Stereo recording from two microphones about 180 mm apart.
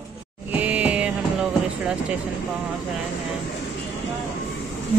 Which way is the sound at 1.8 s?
5° right (ahead or behind).